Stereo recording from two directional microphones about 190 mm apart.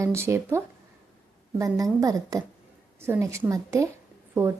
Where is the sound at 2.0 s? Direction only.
20° right (ahead or behind).